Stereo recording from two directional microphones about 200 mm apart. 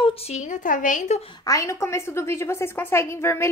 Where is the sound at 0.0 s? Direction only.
35° left (ahead or behind).